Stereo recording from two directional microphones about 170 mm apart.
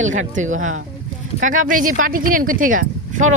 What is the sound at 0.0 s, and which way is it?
Speech, 45° right (ahead or behind).